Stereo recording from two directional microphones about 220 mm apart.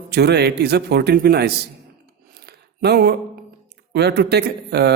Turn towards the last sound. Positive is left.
turn(degrees=-50)  # may be behind; listen again after turning